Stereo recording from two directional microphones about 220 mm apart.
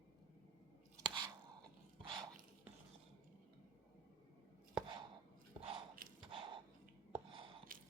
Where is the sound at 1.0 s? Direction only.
20° right (ahead or behind).